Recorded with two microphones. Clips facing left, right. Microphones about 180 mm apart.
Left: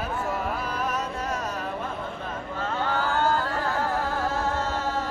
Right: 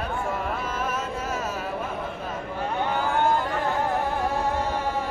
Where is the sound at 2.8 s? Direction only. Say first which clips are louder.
Right 1 dB; 20° right (ahead or behind).